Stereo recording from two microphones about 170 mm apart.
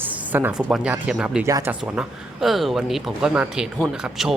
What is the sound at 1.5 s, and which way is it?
Speech, 20° right (ahead or behind).